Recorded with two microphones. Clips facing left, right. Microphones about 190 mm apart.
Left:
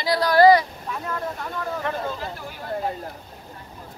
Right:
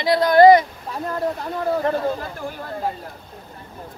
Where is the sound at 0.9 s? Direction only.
35° right (ahead or behind).